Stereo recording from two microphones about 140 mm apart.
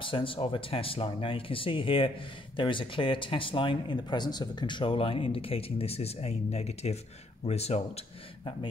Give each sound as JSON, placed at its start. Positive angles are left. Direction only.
{"t": 0.0, "sound": "speech", "side_deg": 40}